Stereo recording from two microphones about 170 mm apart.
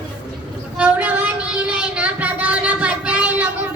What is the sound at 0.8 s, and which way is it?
Child singing, 10° right (ahead or behind).